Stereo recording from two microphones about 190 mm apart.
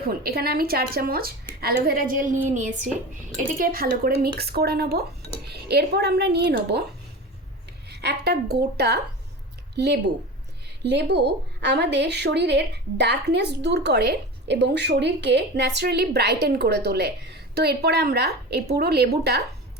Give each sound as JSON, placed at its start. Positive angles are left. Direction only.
{"t": 0.1, "sound": "a woman's voice", "side_deg": -55}
{"t": 7.9, "sound": "a woman's voice", "side_deg": -60}